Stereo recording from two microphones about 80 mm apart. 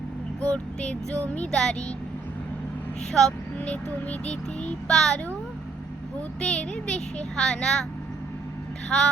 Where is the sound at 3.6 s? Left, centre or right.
Centre.